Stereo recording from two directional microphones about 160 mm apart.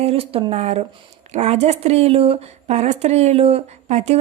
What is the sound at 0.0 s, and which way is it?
Speech, 40° right (ahead or behind).